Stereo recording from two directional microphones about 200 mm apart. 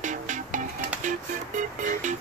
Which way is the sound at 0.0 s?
40° right (ahead or behind).